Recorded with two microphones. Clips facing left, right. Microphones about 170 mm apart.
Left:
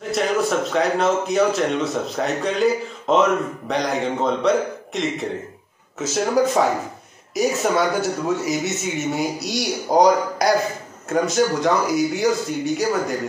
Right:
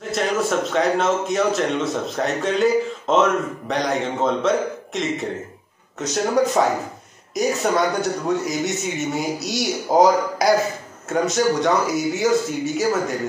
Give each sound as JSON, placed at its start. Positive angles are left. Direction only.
{"t": 0.1, "sound": "speech", "side_deg": 0}